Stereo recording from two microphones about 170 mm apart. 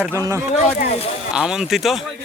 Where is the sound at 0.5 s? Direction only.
40° left (ahead or behind).